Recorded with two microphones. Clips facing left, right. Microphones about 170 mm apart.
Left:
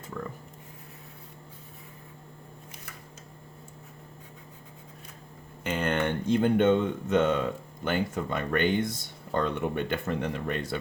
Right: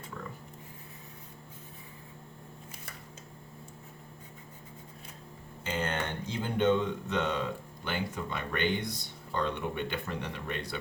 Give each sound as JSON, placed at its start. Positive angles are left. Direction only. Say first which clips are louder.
{"t": 5.6, "sound": "speech", "louder": "left 6 dB", "side_deg": 60}